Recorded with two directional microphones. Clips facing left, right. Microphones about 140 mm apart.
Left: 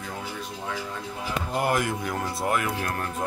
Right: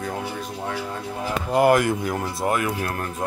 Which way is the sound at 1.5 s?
90° right.